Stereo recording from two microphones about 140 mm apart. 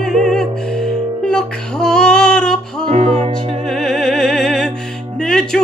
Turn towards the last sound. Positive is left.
turn(degrees=5)  # may be behind; listen again after turning